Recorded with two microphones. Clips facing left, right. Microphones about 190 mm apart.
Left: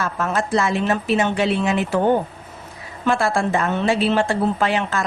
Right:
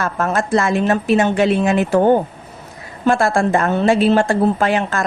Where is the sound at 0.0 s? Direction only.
50° right (ahead or behind).